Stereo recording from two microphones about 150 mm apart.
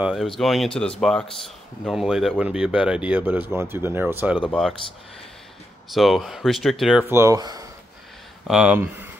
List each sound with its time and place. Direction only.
0.0 s speech: centre (ahead or behind)
4.5 s speech: centre (ahead or behind)
5.9 s speech: centre (ahead or behind)
7.1 s speech: 20° right (ahead or behind)
8.5 s speech: 5° right (ahead or behind)